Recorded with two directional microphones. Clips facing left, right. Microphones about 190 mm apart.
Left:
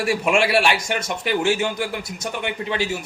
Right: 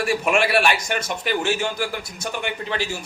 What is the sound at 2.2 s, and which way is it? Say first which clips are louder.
Speech: even; 25° left (ahead or behind).